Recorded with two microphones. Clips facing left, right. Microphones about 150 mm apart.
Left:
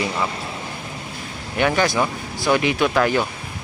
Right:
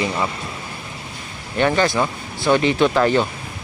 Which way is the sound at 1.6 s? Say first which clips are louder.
Right 1 dB; 5° left (ahead or behind).